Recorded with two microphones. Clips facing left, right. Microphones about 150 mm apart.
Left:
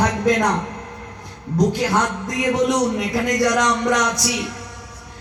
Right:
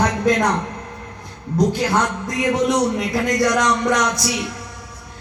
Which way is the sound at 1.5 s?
15° left (ahead or behind).